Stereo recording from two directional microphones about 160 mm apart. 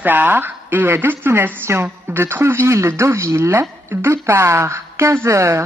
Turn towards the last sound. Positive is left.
turn(degrees=-15)  # may be behind; listen again after turning